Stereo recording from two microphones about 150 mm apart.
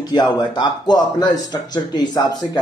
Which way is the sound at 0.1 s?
30° left (ahead or behind).